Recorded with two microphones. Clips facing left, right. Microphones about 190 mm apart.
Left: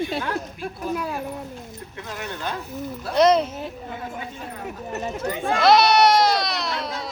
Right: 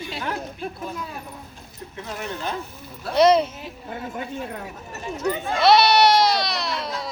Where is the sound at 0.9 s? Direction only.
70° left (ahead or behind).